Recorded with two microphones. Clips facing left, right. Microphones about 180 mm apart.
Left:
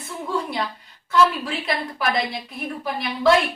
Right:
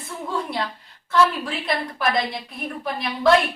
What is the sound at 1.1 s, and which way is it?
A woman's voice, centre (ahead or behind).